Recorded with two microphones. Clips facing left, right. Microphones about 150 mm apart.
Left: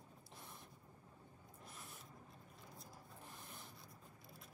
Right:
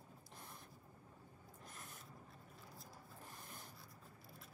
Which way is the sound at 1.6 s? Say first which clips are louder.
Even; centre (ahead or behind).